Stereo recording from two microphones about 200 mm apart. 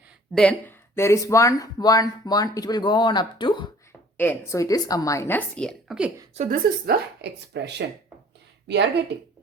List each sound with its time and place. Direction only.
0.3 s speech: 5° left (ahead or behind); by 3.7 s 25° left (ahead or behind)
4.2 s a woman's voice: 10° left (ahead or behind)
6.3 s a woman's voice: 40° right (ahead or behind); by 8.9 s 60° right (ahead or behind)